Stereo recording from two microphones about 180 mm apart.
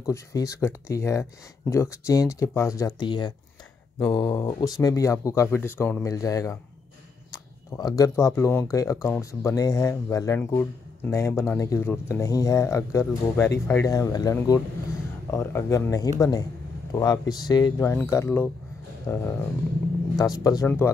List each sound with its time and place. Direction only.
0.0 s speech: 20° left (ahead or behind)
7.7 s speech: 20° left (ahead or behind)